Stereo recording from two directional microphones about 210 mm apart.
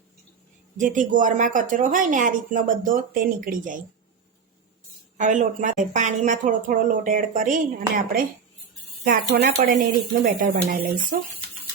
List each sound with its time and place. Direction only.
0.8 s speech: 35° right (ahead or behind)
5.1 s speech: 35° right (ahead or behind)